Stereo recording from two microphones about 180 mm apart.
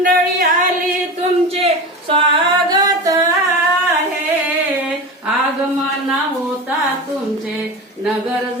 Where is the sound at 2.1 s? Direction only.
25° right (ahead or behind).